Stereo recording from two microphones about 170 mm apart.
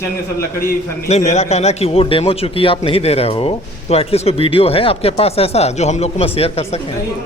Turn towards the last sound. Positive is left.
turn(degrees=35)  # may be behind; listen again after turning